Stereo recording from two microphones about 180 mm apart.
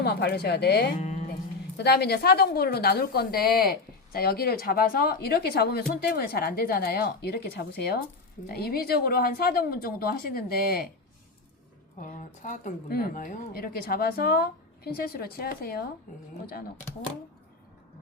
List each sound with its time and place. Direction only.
0.0 s a woman's voice: 65° left (ahead or behind)
0.9 s music: 40° left (ahead or behind)
1.7 s a woman's voice: 65° left (ahead or behind)
11.9 s a woman's voice: 45° left (ahead or behind)